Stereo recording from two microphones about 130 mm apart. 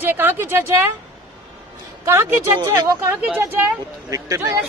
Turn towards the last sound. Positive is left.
turn(degrees=-25)  # may be behind; listen again after turning